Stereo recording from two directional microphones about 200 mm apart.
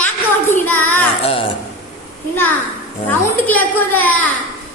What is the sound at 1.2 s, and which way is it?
Speech, 30° left (ahead or behind).